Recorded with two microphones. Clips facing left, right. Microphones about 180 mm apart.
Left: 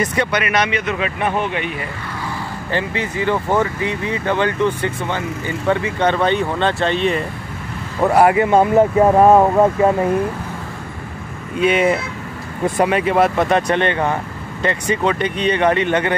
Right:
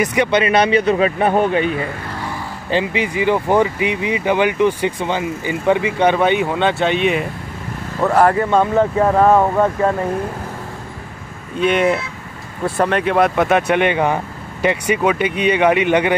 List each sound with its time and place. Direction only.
0.0 s speech: 15° right (ahead or behind)
0.4 s speech: 30° right (ahead or behind)
2.7 s speech: 15° right (ahead or behind)
8.0 s speech: 10° left (ahead or behind)
9.0 s speech: 15° left (ahead or behind)
11.6 s speech: 5° left (ahead or behind); by 16.2 s 15° right (ahead or behind)